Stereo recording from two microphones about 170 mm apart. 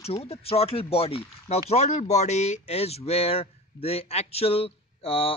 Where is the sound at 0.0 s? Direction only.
35° left (ahead or behind).